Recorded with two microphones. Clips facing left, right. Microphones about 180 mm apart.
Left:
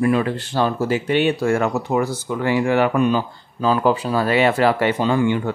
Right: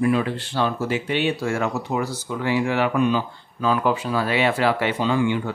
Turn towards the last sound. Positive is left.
turn(degrees=45)  # may be behind; listen again after turning